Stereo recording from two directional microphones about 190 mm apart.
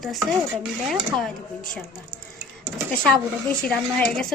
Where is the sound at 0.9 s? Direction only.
Centre (ahead or behind).